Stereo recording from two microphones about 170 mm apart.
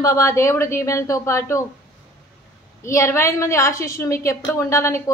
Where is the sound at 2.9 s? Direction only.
15° left (ahead or behind).